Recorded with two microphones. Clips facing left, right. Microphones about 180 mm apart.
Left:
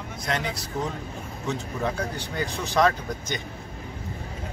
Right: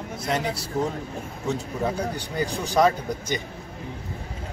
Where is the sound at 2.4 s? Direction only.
35° right (ahead or behind).